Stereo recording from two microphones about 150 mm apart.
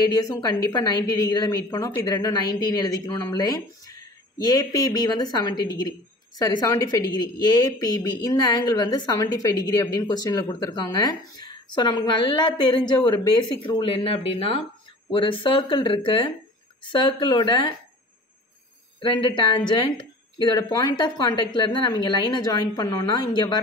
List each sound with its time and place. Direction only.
0.0 s a woman's voice: 25° left (ahead or behind)
18.9 s a woman's voice: 35° left (ahead or behind)